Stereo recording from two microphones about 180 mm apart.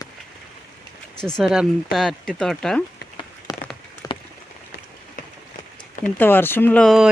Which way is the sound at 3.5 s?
20° left (ahead or behind).